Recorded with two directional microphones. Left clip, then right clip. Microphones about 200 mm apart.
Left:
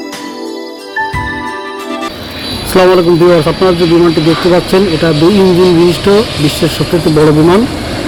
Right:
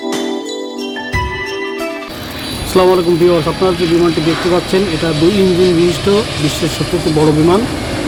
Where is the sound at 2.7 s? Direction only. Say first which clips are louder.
Left 4 dB; 20° left (ahead or behind).